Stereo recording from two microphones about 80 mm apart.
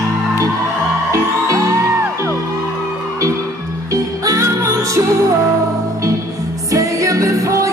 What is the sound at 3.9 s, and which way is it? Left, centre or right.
Music, right.